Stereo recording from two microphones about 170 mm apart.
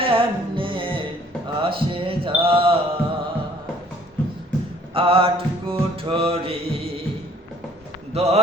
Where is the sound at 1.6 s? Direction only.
30° right (ahead or behind).